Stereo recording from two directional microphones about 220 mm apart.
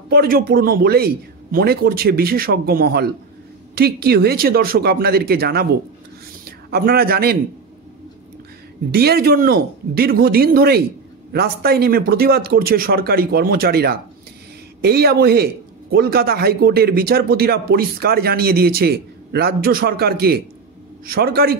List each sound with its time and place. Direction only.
0.1 s a man's voice: 45° right (ahead or behind)
6.7 s a man's voice: 45° right (ahead or behind)
8.9 s a man's voice: 45° right (ahead or behind)